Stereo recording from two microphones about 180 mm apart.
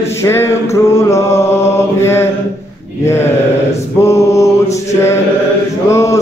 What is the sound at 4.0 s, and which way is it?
Mantra, 15° left (ahead or behind).